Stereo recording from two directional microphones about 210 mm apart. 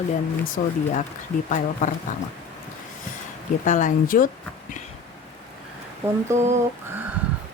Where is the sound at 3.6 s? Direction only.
35° left (ahead or behind).